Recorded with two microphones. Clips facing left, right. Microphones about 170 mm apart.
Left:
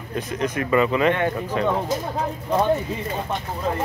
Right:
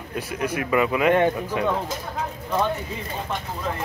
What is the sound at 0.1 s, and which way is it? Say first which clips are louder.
Speech: left 2 dB; 10° right (ahead or behind).